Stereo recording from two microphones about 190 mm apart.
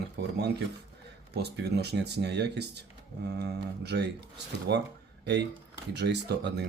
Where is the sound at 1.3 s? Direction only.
60° right (ahead or behind).